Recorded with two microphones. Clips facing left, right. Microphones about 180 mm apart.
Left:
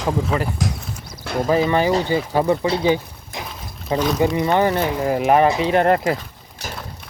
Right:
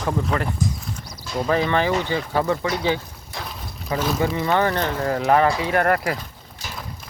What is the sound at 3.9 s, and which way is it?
Speech, 25° left (ahead or behind).